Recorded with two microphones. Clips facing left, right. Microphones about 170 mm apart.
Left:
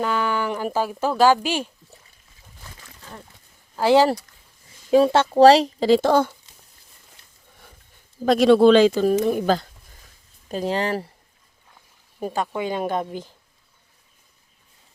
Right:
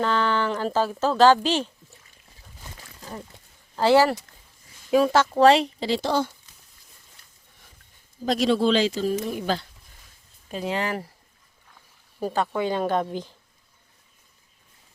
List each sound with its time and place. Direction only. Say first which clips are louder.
0.0 s speech: even; 10° left (ahead or behind)
3.8 s speech: left 2 dB; 15° left (ahead or behind)
4.9 s a woman's voice: left 3 dB; 30° left (ahead or behind); by 6.3 s 50° left (ahead or behind)
8.2 s speech: left 7 dB; 60° left (ahead or behind)
10.5 s a woman's voice: left 4 dB; 35° left (ahead or behind)
12.2 s speech: right 1 dB; 10° left (ahead or behind)